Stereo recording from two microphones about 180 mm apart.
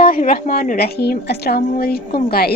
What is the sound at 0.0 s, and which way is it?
A woman's voice, 50° left (ahead or behind).